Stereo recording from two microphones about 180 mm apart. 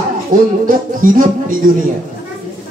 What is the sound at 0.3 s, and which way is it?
Speech, 50° right (ahead or behind).